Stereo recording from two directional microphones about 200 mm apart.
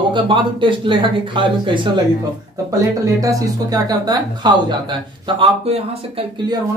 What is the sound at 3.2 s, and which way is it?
Speech, 15° right (ahead or behind).